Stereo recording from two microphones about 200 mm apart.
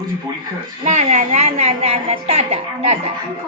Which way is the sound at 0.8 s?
35° right (ahead or behind).